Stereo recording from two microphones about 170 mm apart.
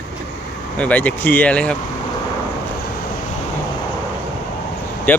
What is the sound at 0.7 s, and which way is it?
Speech, 10° left (ahead or behind).